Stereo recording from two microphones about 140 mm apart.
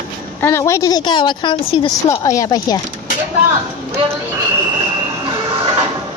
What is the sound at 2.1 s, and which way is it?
Speech, 25° left (ahead or behind).